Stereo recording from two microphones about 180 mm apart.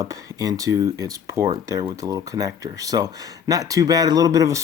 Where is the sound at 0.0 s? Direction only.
20° right (ahead or behind).